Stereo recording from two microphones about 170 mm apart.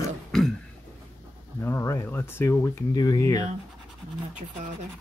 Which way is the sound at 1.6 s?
15° left (ahead or behind).